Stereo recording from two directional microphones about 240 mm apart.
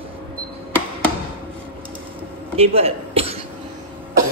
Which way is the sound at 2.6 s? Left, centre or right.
Right.